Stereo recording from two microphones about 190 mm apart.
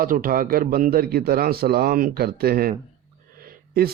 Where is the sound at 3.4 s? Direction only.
50° right (ahead or behind).